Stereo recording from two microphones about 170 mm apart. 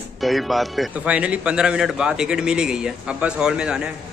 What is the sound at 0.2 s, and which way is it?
A man's voice, centre (ahead or behind).